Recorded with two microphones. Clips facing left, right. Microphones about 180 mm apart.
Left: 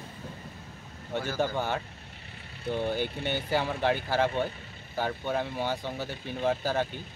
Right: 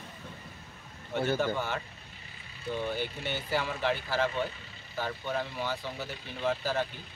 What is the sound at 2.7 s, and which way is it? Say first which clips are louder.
Speech: left 3 dB; 65° left (ahead or behind).